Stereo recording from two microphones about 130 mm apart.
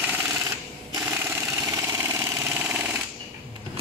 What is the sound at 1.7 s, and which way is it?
Vehicle, 25° right (ahead or behind).